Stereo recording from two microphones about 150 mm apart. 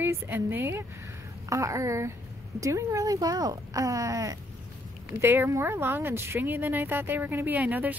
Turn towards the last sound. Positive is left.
turn(degrees=-10)  # may be behind; listen again after turning